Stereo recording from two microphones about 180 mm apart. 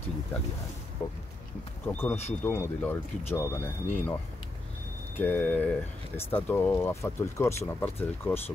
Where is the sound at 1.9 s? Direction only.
10° left (ahead or behind).